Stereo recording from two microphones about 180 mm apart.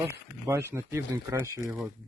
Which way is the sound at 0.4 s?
15° right (ahead or behind).